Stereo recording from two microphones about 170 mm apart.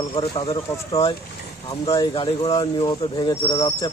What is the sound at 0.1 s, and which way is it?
Speech, 30° left (ahead or behind).